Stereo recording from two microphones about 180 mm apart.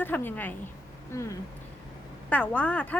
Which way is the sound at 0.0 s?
10° left (ahead or behind).